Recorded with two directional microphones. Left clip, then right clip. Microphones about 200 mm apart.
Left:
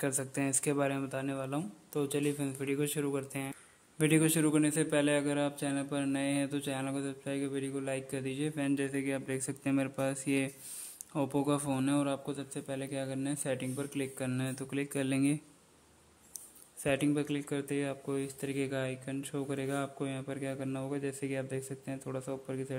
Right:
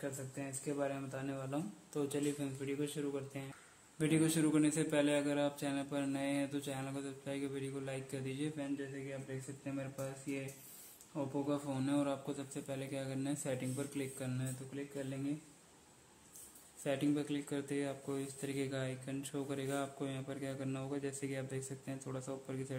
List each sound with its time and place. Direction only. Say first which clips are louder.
0.0 s a man's voice: left 10 dB; 40° left (ahead or behind)
16.8 s a man's voice: left 5 dB; 25° left (ahead or behind)